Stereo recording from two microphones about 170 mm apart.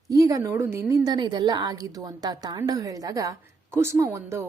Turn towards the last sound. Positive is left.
turn(degrees=-15)  # may be behind; listen again after turning